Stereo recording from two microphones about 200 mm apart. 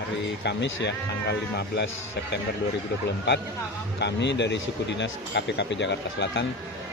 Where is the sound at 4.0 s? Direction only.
60° left (ahead or behind).